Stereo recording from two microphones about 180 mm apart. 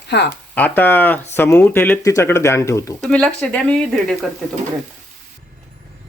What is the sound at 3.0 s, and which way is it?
Speech, 5° left (ahead or behind).